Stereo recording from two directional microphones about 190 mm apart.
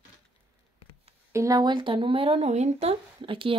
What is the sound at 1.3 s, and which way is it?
Speech, 15° right (ahead or behind).